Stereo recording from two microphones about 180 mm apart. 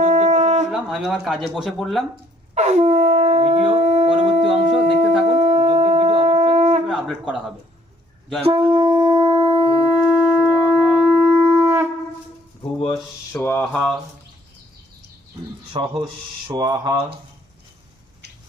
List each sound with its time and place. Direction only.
0.0 s wind instrument: 45° right (ahead or behind)
0.7 s speech: 5° right (ahead or behind)
2.6 s shofar: 35° right (ahead or behind)
4.5 s a sound: 35° right (ahead or behind)
5.2 s shofar: 35° right (ahead or behind)
6.8 s a man's voice: 5° right (ahead or behind)
8.4 s shofar: 30° right (ahead or behind)
9.4 s shofar: 35° right (ahead or behind)
10.2 s shofar: 5° right (ahead or behind)
12.9 s speech: 10° left (ahead or behind)
15.7 s speech: 25° right (ahead or behind)